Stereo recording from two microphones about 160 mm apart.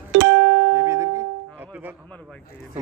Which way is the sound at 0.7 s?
20° right (ahead or behind).